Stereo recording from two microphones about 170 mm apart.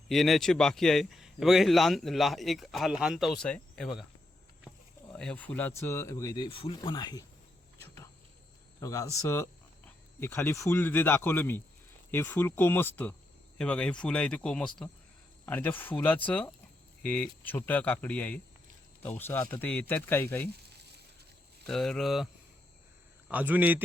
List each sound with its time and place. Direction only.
0.1 s speech: centre (ahead or behind)
5.1 s speech: 10° left (ahead or behind); by 7.3 s 25° left (ahead or behind)
8.8 s speech: 20° left (ahead or behind)
21.7 s speech: 5° left (ahead or behind)
23.3 s a man's voice: 10° right (ahead or behind)